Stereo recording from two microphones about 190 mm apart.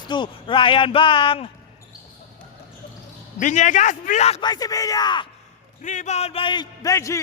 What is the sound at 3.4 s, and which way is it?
A man's voice, 40° left (ahead or behind).